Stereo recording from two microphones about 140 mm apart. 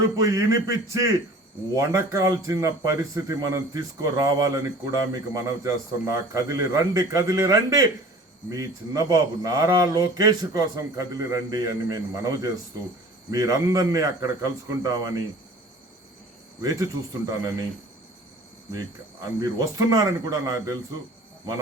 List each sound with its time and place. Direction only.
0.2 s speech: 25° right (ahead or behind)
16.6 s speech: 25° right (ahead or behind)
19.4 s speech: 25° right (ahead or behind)